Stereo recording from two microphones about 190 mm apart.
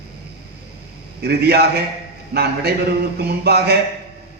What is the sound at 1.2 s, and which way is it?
A man's voice, 60° right (ahead or behind).